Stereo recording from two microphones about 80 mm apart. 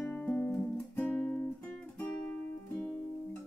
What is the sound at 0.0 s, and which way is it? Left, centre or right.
Music, left.